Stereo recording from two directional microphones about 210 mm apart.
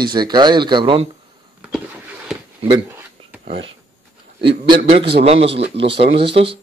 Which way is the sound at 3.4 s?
25° right (ahead or behind).